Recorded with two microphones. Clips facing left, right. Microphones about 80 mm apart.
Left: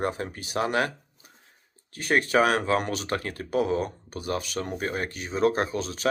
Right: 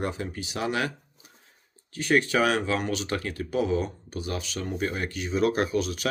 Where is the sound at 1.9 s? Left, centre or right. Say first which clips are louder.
Left 1 dB; left.